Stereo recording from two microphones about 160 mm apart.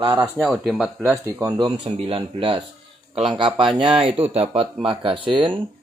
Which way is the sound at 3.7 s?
35° right (ahead or behind).